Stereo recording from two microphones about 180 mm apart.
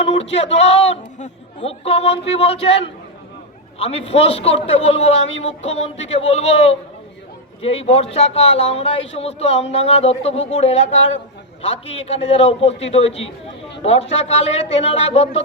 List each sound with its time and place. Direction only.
0.1 s a man's voice: 35° left (ahead or behind)